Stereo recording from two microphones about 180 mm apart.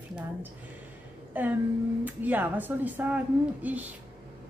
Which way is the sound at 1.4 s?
10° right (ahead or behind).